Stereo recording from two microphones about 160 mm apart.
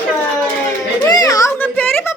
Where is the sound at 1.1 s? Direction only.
20° left (ahead or behind).